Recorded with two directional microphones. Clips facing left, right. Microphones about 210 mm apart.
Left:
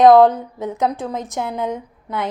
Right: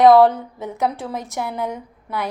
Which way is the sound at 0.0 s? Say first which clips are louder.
Left 1 dB; 20° left (ahead or behind).